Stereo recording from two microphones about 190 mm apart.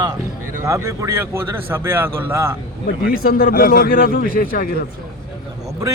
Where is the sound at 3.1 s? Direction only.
50° left (ahead or behind).